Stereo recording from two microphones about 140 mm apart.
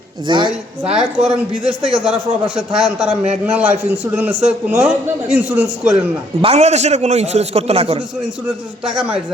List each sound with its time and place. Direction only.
0.3 s a woman's voice: 35° right (ahead or behind)
0.9 s a man's voice: 5° right (ahead or behind)
6.4 s a man's voice: 50° right (ahead or behind)
8.4 s speech: 5° right (ahead or behind)